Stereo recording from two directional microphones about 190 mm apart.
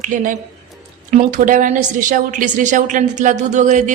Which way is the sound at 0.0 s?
45° right (ahead or behind).